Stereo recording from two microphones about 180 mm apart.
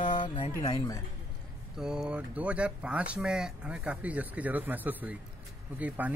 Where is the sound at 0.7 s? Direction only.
20° left (ahead or behind).